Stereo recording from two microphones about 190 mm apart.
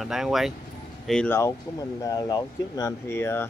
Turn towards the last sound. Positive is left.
turn(degrees=15)  # may be behind; listen again after turning